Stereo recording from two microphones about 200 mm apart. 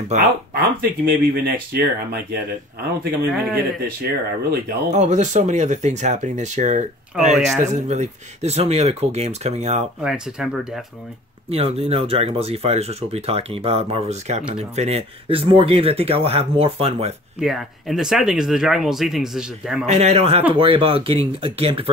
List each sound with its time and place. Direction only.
0.1 s speech: 35° right (ahead or behind)
0.6 s a man's voice: 50° right (ahead or behind)
3.5 s a man's voice: 50° right (ahead or behind)
4.9 s speech: 35° right (ahead or behind)
10.0 s speech: 5° right (ahead or behind)
11.5 s speech: 30° right (ahead or behind)
17.4 s speech: centre (ahead or behind)
19.9 s speech: 35° right (ahead or behind)